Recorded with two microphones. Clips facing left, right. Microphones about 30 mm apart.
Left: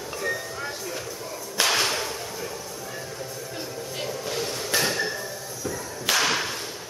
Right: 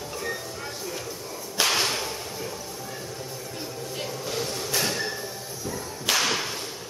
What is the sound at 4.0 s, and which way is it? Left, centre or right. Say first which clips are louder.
Music: left 1 dB; centre.